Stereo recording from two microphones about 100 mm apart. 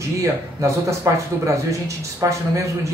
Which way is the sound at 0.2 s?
30° right (ahead or behind).